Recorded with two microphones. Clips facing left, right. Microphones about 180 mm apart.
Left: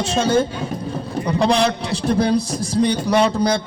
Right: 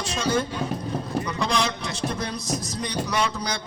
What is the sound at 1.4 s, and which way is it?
Speech, 60° left (ahead or behind).